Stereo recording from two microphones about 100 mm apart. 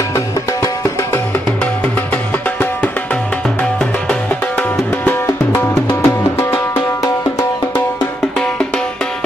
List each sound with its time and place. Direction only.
4.1 s music: 20° left (ahead or behind)
8.4 s music: 10° left (ahead or behind)